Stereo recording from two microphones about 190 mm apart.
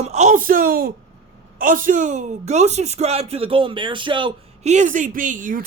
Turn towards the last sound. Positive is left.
turn(degrees=-45)  # may be behind; listen again after turning